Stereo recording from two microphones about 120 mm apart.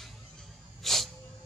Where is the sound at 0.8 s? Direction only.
Centre (ahead or behind).